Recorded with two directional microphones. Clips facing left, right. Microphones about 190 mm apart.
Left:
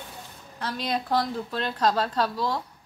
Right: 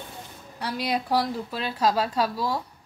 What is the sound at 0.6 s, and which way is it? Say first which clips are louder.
A woman's voice: right 1 dB; 10° right (ahead or behind).